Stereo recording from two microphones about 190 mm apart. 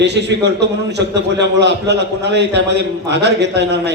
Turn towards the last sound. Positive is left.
turn(degrees=-65)  # may be behind; listen again after turning